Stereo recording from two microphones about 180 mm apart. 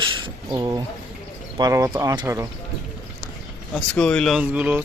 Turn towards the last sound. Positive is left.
turn(degrees=-10)  # may be behind; listen again after turning